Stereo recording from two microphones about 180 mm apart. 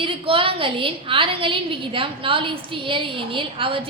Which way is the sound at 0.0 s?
30° right (ahead or behind).